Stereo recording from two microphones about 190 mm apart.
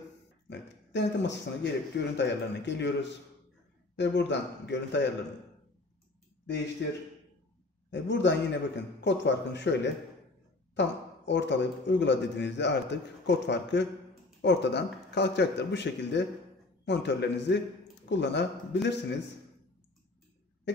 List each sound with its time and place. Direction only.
0.5 s speech: 65° left (ahead or behind)
7.9 s a man's voice: 65° left (ahead or behind)